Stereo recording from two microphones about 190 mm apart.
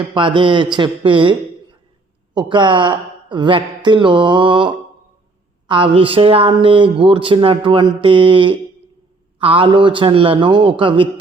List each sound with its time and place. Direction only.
0.0 s speech: 25° right (ahead or behind)